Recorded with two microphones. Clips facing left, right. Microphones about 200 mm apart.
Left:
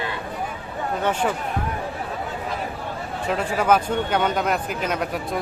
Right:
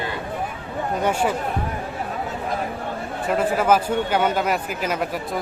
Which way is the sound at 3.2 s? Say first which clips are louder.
Right 2 dB; 5° right (ahead or behind).